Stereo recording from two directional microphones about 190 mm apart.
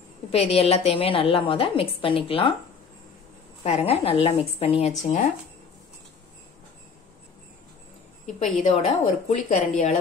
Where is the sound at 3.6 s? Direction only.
35° left (ahead or behind).